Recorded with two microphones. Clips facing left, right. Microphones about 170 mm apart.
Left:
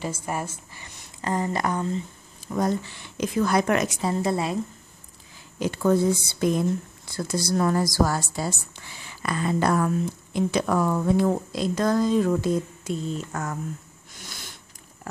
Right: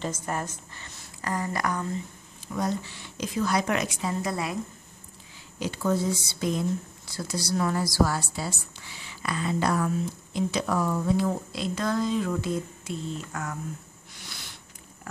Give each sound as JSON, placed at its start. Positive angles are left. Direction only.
{"t": 0.0, "sound": "speech", "side_deg": 10}
{"t": 1.2, "sound": "speech", "side_deg": 25}
{"t": 2.4, "sound": "a woman's voice", "side_deg": 45}
{"t": 5.6, "sound": "a woman's voice", "side_deg": 55}
{"t": 14.1, "sound": "sniff", "side_deg": 45}